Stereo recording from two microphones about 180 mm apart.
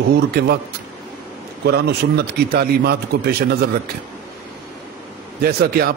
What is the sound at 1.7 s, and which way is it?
A man's voice, 65° right (ahead or behind).